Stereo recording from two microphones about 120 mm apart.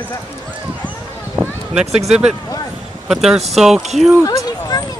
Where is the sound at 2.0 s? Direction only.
5° right (ahead or behind).